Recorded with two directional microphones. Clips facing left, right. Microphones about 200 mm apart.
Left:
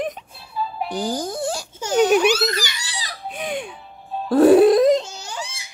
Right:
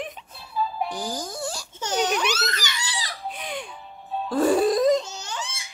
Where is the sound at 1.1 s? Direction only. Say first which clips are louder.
Left 7 dB; 55° left (ahead or behind).